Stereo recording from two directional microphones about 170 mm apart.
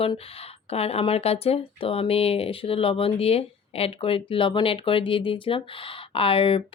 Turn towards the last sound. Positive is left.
turn(degrees=35)  # may be behind; listen again after turning